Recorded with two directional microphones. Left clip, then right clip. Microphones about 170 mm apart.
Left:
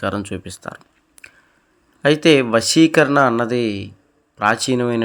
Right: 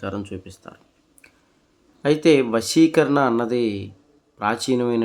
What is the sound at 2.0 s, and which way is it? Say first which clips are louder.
Speech: left 3 dB; 15° left (ahead or behind).